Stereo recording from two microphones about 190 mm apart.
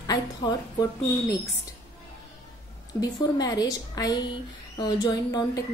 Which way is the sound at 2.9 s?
20° left (ahead or behind).